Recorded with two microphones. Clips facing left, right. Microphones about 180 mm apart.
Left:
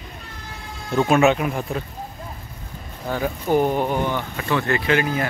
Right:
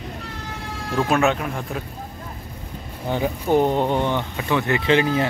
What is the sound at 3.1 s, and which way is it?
Speech, 20° right (ahead or behind).